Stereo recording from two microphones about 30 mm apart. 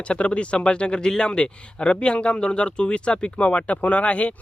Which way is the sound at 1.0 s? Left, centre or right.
Left.